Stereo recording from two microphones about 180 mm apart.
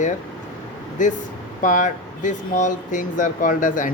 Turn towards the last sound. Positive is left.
turn(degrees=50)  # may be behind; listen again after turning